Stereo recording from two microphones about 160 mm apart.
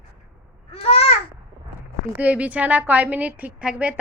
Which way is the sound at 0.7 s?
40° left (ahead or behind).